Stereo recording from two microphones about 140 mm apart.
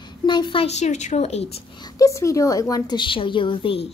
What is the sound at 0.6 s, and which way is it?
Speech, 50° left (ahead or behind).